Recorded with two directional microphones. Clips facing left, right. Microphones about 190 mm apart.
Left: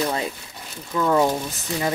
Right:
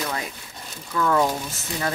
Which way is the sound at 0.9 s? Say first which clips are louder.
Left 2 dB; 20° left (ahead or behind).